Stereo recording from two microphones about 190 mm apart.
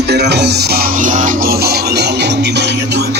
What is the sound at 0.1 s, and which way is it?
Music, 60° right (ahead or behind).